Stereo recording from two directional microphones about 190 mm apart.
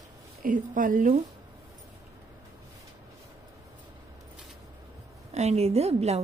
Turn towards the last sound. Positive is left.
turn(degrees=-35)  # may be behind; listen again after turning